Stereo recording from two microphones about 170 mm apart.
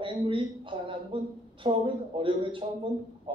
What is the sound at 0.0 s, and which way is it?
A man's voice, 30° right (ahead or behind).